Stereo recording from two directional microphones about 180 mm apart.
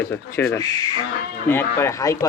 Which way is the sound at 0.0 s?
10° left (ahead or behind).